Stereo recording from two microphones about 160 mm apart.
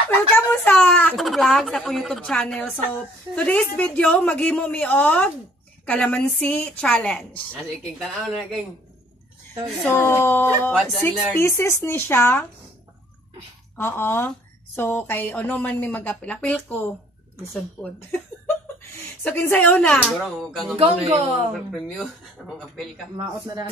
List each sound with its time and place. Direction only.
0.5 s a woman's voice: 10° left (ahead or behind)
9.8 s a woman's voice: 15° left (ahead or behind)
10.7 s speech: centre (ahead or behind)
11.3 s a woman's voice: 15° left (ahead or behind)
13.7 s a woman's voice: 15° left (ahead or behind)
19.2 s a woman's voice: 10° left (ahead or behind)
20.7 s a man's voice: 35° right (ahead or behind)
21.7 s speech: centre (ahead or behind)
23.1 s speech: 25° right (ahead or behind)